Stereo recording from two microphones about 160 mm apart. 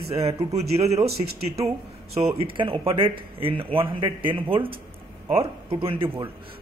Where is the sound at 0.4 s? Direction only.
40° right (ahead or behind).